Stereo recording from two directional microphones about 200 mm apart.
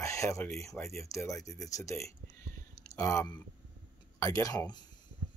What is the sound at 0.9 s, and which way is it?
Speech, 15° left (ahead or behind).